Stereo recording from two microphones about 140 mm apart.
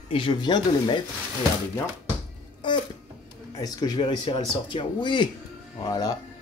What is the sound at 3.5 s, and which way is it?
Speech, 25° left (ahead or behind).